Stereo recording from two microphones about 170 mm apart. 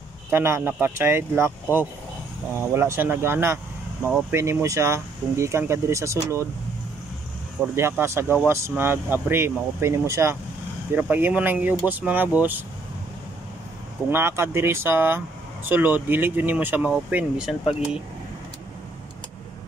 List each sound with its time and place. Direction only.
0.3 s speech: 15° right (ahead or behind)
7.6 s speech: 15° right (ahead or behind)
14.1 s speech: 15° right (ahead or behind)